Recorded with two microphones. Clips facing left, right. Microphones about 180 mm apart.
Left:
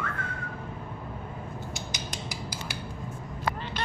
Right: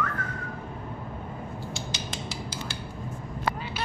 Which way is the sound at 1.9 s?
15° left (ahead or behind).